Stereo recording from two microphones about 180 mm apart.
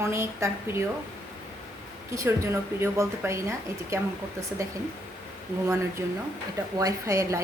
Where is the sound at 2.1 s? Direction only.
15° right (ahead or behind).